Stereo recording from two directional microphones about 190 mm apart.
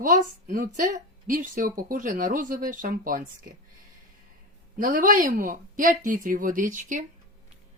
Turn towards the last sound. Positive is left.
turn(degrees=-45)  # may be behind; listen again after turning